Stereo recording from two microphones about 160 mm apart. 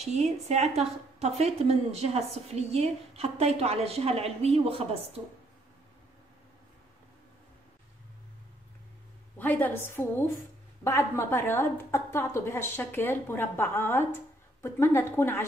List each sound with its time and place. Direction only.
0.0 s a woman's voice: 45° right (ahead or behind)
9.4 s a woman's voice: 10° left (ahead or behind)